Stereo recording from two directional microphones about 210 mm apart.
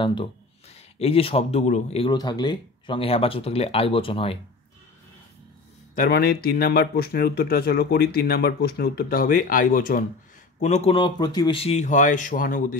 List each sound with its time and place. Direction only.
0.0 s speech: 25° left (ahead or behind)
5.9 s speech: 50° left (ahead or behind)
10.6 s speech: 30° left (ahead or behind)